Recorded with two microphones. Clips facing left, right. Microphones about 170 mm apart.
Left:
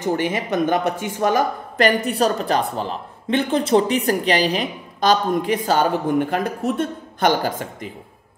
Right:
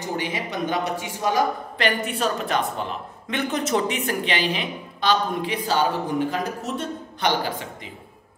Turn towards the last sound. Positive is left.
turn(degrees=45)  # may be behind; listen again after turning